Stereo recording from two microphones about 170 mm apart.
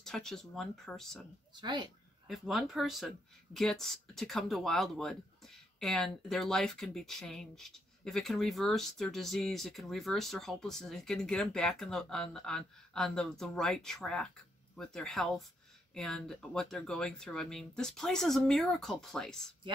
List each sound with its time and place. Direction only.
0.0 s speech: centre (ahead or behind)
1.5 s speech: 25° right (ahead or behind)
2.2 s speech: centre (ahead or behind)